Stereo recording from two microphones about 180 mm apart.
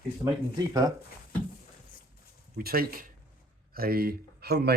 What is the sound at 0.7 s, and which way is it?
Speech, 20° right (ahead or behind).